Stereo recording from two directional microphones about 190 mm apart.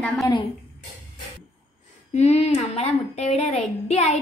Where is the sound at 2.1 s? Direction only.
35° left (ahead or behind).